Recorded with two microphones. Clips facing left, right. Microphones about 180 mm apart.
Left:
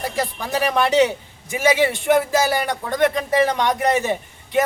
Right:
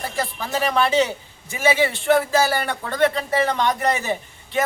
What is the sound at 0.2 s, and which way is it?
Speech, 15° left (ahead or behind).